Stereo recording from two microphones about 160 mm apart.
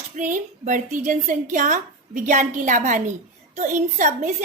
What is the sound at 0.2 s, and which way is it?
A woman's voice, 50° right (ahead or behind).